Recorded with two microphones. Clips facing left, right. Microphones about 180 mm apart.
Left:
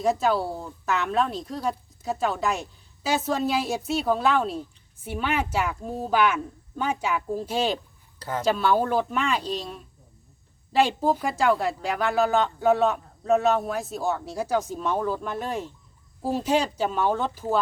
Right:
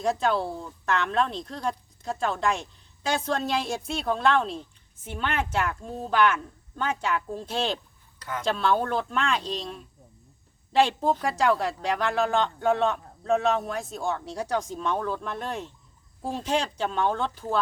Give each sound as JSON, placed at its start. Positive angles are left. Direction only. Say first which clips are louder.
{"t": 0.0, "sound": "a woman's voice", "louder": "left 2 dB", "side_deg": 5}
{"t": 8.2, "sound": "speech", "louder": "left 4 dB", "side_deg": 30}
{"t": 8.4, "sound": "a woman's voice", "louder": "left 2 dB", "side_deg": 5}